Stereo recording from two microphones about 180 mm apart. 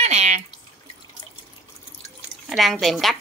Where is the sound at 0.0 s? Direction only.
35° right (ahead or behind).